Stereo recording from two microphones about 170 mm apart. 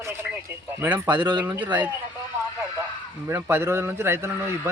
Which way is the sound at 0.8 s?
10° right (ahead or behind).